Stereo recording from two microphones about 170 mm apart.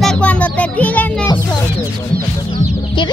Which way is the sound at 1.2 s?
25° left (ahead or behind).